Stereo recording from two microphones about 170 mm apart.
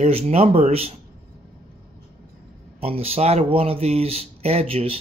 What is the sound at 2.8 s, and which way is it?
Speech, 35° right (ahead or behind).